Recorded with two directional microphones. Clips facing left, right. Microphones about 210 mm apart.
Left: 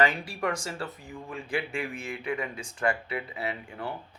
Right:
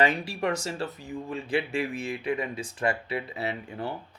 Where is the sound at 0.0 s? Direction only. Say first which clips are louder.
Right 1 dB; 25° right (ahead or behind).